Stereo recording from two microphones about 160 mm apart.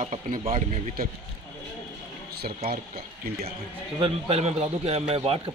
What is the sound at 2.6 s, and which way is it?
Speech, 75° right (ahead or behind).